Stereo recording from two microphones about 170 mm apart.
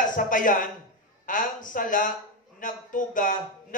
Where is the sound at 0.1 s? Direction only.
50° left (ahead or behind).